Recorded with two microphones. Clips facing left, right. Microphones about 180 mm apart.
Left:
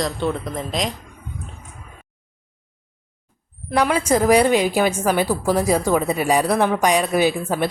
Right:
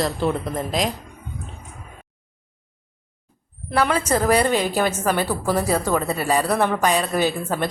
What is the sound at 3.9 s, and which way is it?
A woman's voice, 10° left (ahead or behind).